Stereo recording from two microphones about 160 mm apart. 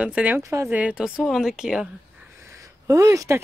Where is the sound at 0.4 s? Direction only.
20° right (ahead or behind); by 1.9 s 5° right (ahead or behind).